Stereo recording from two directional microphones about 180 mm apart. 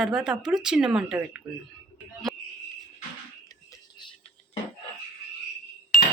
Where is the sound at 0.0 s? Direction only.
5° right (ahead or behind).